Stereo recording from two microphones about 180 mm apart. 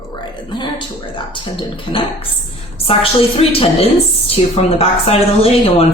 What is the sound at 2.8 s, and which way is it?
Speech, 30° left (ahead or behind).